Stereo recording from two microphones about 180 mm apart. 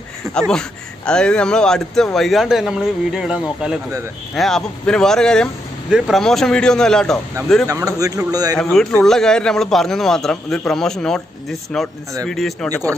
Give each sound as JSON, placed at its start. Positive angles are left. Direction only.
{"t": 0.3, "sound": "speech", "side_deg": 5}
{"t": 7.6, "sound": "a man's voice", "side_deg": -20}
{"t": 8.5, "sound": "speech", "side_deg": 10}